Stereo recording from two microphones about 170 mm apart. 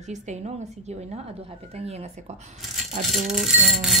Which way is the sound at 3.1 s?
Centre (ahead or behind).